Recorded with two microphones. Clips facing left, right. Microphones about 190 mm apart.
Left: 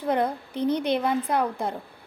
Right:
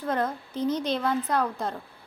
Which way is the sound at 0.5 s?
60° left (ahead or behind).